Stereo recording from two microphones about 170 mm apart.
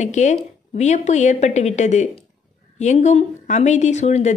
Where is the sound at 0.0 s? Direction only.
45° left (ahead or behind).